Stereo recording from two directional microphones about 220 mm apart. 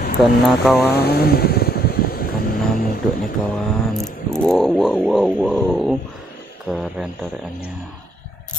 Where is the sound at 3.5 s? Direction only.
Centre (ahead or behind).